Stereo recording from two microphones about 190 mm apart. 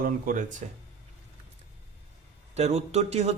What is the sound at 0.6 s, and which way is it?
Speech, 35° right (ahead or behind).